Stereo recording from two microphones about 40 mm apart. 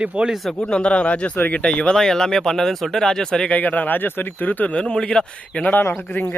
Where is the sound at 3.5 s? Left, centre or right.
Left.